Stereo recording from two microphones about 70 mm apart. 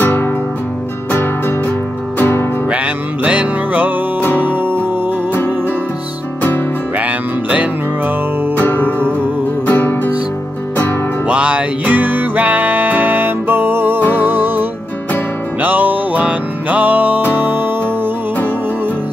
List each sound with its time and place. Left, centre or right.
0.0 s music: left
2.1 s music: left
2.7 s music: centre
4.2 s music: left
4.5 s music: right
7.0 s music: right
8.5 s music: left
11.2 s music: centre